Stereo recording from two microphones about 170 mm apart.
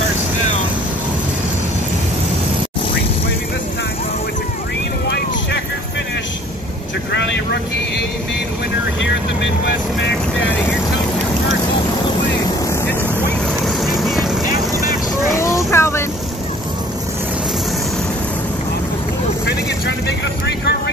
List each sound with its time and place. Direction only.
7.1 s vehicle: 90° left
13.7 s vehicle: centre (ahead or behind)
15.3 s vehicle: 15° left (ahead or behind)
20.4 s vehicle: 80° left